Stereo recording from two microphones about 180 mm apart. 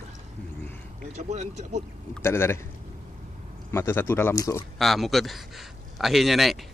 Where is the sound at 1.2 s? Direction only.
40° right (ahead or behind).